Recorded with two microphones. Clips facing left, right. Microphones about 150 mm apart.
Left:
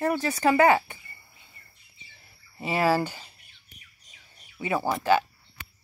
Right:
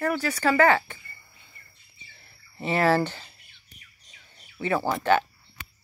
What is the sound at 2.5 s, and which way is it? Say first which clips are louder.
Speech: right 2 dB; 10° left (ahead or behind).